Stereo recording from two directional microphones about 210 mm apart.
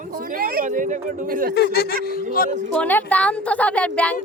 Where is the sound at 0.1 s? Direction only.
45° right (ahead or behind).